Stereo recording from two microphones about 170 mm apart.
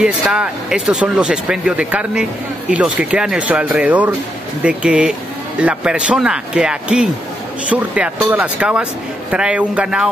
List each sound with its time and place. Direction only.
0.0 s speech: 5° right (ahead or behind)